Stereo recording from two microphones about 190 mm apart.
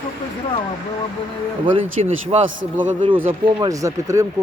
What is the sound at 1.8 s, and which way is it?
Speech, 35° right (ahead or behind).